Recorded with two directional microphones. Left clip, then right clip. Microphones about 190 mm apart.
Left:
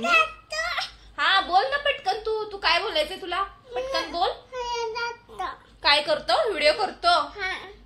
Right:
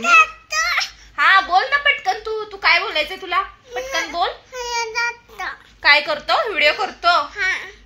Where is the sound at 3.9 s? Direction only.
25° right (ahead or behind).